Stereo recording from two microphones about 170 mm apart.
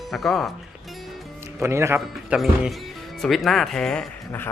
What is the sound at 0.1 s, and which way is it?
Speech, centre (ahead or behind).